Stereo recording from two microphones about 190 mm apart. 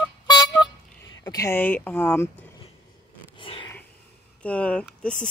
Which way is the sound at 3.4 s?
25° left (ahead or behind).